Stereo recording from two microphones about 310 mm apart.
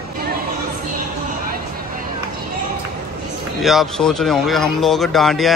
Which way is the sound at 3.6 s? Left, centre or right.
Centre.